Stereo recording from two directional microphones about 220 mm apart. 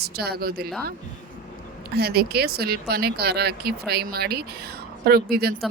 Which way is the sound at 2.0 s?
45° right (ahead or behind).